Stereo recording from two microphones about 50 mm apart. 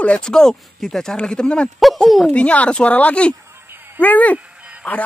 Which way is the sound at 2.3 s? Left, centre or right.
Left.